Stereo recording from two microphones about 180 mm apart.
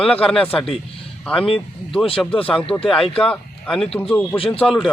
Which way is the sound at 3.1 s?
5° left (ahead or behind).